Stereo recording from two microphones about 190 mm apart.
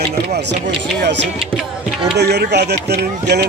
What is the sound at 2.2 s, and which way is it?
Speech, 60° right (ahead or behind).